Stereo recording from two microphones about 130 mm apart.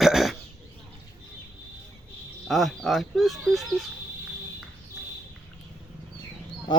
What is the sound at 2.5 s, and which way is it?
Speech, centre (ahead or behind).